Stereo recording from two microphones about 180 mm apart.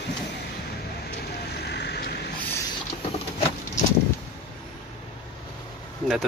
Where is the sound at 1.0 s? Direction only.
65° left (ahead or behind).